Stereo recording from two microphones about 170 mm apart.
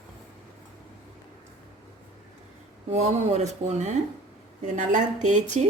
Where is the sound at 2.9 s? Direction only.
40° right (ahead or behind).